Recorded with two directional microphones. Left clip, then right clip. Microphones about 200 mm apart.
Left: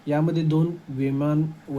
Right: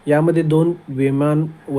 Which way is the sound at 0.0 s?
15° right (ahead or behind).